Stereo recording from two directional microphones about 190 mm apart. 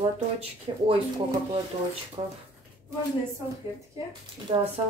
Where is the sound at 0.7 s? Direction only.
25° right (ahead or behind).